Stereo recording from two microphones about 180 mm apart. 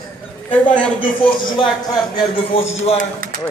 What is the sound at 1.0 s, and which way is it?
Speech, 30° left (ahead or behind).